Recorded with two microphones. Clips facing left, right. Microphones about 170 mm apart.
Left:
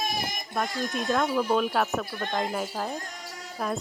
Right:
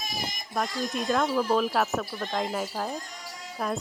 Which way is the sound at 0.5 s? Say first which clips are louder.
Even; centre (ahead or behind).